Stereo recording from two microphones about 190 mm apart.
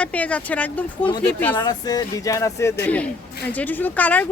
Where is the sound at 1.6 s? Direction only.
20° left (ahead or behind).